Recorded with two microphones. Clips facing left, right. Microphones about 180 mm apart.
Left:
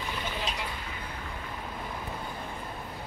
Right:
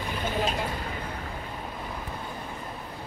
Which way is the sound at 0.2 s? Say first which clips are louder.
Right 10 dB; 50° right (ahead or behind).